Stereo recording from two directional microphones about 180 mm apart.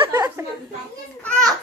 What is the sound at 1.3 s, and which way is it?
Children playing, 5° left (ahead or behind).